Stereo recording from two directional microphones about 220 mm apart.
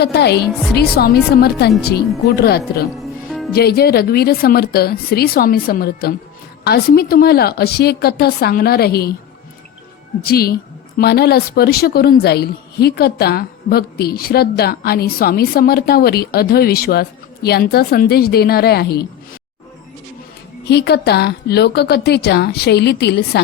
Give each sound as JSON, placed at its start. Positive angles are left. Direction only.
{"t": 0.0, "sound": "a woman's voice", "side_deg": 50}
{"t": 2.9, "sound": "music", "side_deg": 0}
{"t": 3.5, "sound": "a woman's voice", "side_deg": 45}
{"t": 10.2, "sound": "a woman's voice", "side_deg": 45}
{"t": 20.7, "sound": "a woman's voice", "side_deg": 50}